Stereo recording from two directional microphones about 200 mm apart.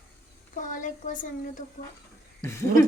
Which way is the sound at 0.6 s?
40° left (ahead or behind).